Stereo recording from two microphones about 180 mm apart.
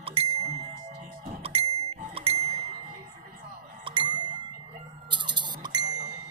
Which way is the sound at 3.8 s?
25° right (ahead or behind).